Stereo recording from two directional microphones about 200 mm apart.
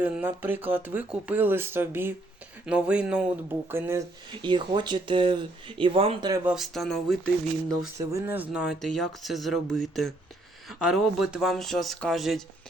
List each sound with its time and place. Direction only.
0.0 s speech: 10° right (ahead or behind)
4.3 s speech: 25° right (ahead or behind)
6.4 s speech: centre (ahead or behind)
7.9 s speech: 15° right (ahead or behind)